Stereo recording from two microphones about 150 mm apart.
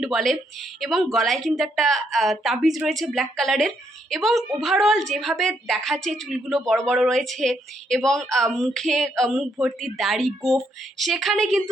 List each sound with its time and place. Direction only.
0.0 s a woman's voice: centre (ahead or behind)